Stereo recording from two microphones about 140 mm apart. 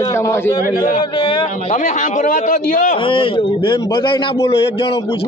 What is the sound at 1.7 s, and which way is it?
A man's voice, 60° left (ahead or behind).